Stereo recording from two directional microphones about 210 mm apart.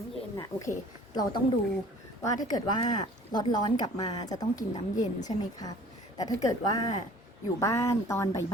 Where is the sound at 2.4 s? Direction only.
20° left (ahead or behind).